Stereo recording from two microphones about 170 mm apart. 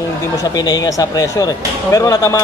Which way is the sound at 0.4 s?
25° left (ahead or behind).